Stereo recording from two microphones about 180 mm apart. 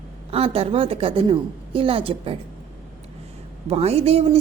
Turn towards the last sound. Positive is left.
turn(degrees=-35)  # may be behind; listen again after turning